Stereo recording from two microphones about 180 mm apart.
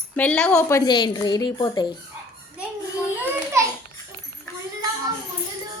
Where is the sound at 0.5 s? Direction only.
15° left (ahead or behind).